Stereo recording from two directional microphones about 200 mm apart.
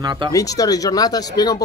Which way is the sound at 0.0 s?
20° right (ahead or behind).